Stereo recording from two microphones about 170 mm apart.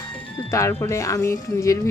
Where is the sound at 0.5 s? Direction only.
15° left (ahead or behind).